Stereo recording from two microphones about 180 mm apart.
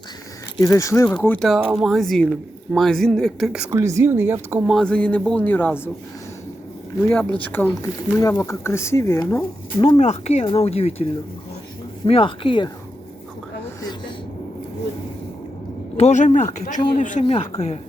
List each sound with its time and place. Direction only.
0.6 s speech: 15° left (ahead or behind)
1.4 s speech: centre (ahead or behind)
4.6 s speech: centre (ahead or behind)
7.1 s speech: 10° left (ahead or behind)
9.7 s speech: 30° left (ahead or behind)
12.0 s speech: 30° left (ahead or behind)
16.0 s speech: 40° left (ahead or behind)